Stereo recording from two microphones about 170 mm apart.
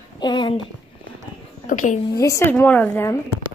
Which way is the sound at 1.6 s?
50° left (ahead or behind).